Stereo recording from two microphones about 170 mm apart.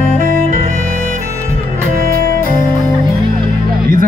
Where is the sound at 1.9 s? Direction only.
60° right (ahead or behind).